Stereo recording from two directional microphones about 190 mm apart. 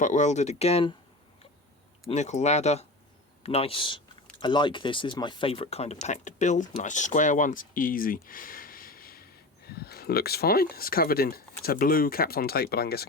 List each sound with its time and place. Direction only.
0.0 s speech: 40° left (ahead or behind)
2.0 s speech: 35° left (ahead or behind); by 13.1 s 55° left (ahead or behind)